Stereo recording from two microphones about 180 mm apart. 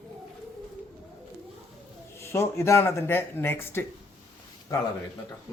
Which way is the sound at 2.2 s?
15° left (ahead or behind).